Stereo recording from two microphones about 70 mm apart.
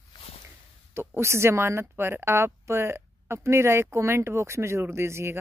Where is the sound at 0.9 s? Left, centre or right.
Right.